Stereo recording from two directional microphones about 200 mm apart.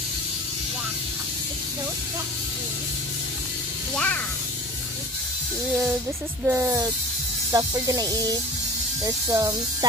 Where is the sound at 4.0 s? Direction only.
5° left (ahead or behind).